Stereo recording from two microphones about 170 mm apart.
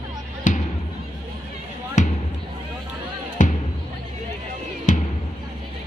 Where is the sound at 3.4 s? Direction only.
50° left (ahead or behind).